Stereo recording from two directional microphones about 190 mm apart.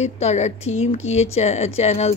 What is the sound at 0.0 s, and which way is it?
Speech, 35° left (ahead or behind).